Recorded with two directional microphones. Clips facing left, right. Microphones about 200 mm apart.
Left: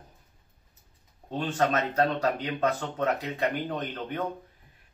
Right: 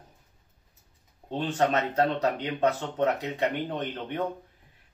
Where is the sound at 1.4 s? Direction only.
20° right (ahead or behind).